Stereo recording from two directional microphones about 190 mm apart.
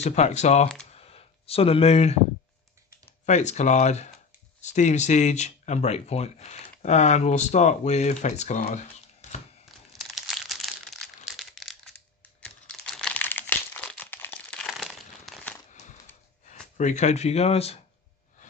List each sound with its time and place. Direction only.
0.0 s speech: 35° left (ahead or behind)
0.9 s a sound: 30° left (ahead or behind)
3.3 s speech: 35° left (ahead or behind)
9.9 s crumpling: centre (ahead or behind)
15.7 s a sound: 40° left (ahead or behind)
16.7 s speech: 40° left (ahead or behind)